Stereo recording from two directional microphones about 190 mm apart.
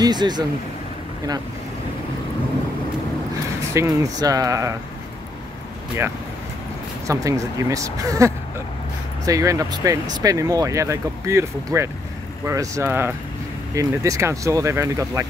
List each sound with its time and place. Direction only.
0.0 s speech: 20° right (ahead or behind)
3.7 s speech: 15° right (ahead or behind)
7.1 s speech: 15° right (ahead or behind)